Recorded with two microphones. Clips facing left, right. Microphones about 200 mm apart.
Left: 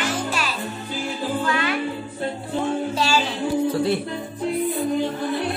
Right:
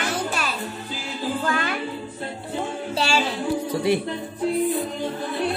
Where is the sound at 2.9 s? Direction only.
30° right (ahead or behind).